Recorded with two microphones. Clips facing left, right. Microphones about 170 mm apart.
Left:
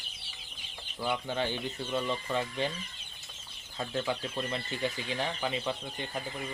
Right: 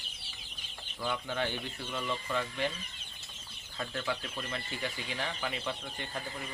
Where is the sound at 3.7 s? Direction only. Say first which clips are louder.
Left 3 dB; 25° left (ahead or behind).